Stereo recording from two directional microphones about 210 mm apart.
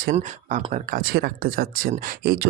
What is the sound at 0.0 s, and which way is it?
Speech, 35° right (ahead or behind).